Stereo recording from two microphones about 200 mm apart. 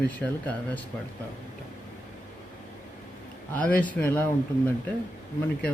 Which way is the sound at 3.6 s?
5° left (ahead or behind).